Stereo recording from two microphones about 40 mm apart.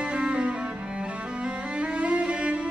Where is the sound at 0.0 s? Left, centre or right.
Right.